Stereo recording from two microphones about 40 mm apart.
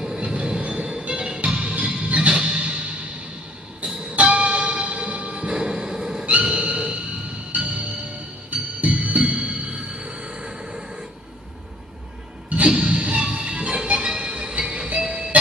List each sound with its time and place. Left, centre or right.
0.0 s music: right
1.6 s music: right
4.2 s music: right
5.6 s vehicle: centre
6.4 s dog: right
7.5 s music: right
12.6 s music: right